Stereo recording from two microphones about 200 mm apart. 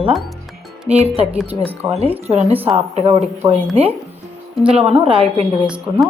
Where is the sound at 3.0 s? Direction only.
30° right (ahead or behind).